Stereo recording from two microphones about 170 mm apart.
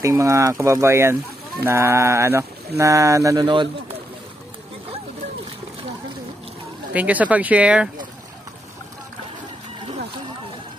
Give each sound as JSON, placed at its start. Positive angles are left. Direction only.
{"t": 0.0, "sound": "speech", "side_deg": -20}
{"t": 6.9, "sound": "speech", "side_deg": -10}